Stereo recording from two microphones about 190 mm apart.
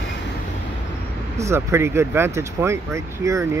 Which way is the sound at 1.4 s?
15° right (ahead or behind).